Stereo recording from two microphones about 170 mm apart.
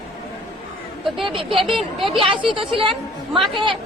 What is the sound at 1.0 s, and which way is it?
Speech, centre (ahead or behind).